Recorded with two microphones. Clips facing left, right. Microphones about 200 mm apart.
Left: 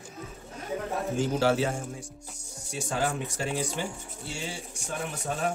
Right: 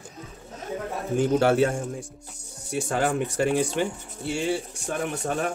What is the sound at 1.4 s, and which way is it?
Speech, 55° right (ahead or behind).